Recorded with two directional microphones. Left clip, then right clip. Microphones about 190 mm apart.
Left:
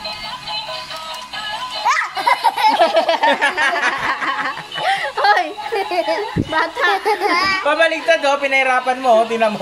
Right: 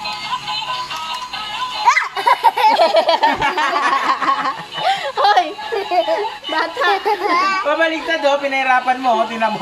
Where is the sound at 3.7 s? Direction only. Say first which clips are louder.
Right 2 dB; 15° right (ahead or behind).